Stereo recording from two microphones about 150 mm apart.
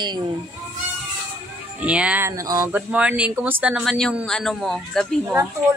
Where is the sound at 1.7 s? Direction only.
10° right (ahead or behind).